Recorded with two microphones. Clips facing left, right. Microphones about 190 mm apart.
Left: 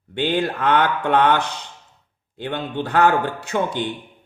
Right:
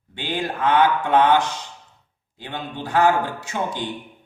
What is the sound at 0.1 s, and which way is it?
Speech, 65° left (ahead or behind).